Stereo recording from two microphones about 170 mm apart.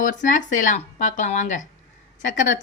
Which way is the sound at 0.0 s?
50° left (ahead or behind).